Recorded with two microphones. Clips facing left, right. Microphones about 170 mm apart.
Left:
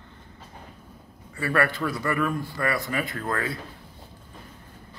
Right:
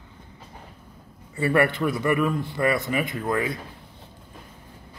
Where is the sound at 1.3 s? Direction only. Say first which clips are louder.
Right 4 dB; 20° right (ahead or behind).